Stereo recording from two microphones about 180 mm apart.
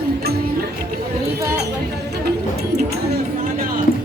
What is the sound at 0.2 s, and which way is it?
Music, 60° right (ahead or behind).